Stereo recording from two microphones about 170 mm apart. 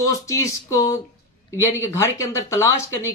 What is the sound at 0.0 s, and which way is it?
Speech, 20° left (ahead or behind).